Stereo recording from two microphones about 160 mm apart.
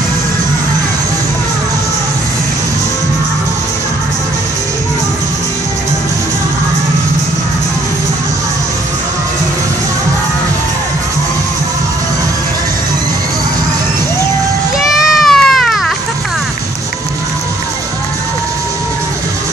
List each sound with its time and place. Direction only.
14.8 s children playing: centre (ahead or behind)